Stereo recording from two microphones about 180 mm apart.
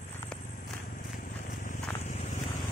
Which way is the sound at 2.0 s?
45° left (ahead or behind).